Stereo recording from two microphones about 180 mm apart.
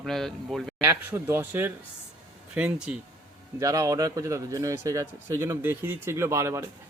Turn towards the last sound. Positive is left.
turn(degrees=-15)  # may be behind; listen again after turning